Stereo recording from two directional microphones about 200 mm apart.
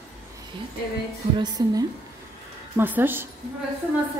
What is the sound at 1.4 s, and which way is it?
Speech, 20° right (ahead or behind).